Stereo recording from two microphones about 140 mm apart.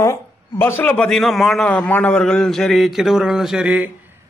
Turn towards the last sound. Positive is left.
turn(degrees=-10)  # may be behind; listen again after turning